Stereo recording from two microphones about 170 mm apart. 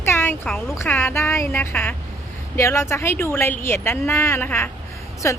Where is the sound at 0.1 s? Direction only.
15° left (ahead or behind).